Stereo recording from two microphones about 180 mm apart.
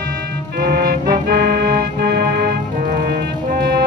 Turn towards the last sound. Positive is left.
turn(degrees=-60)  # may be behind; listen again after turning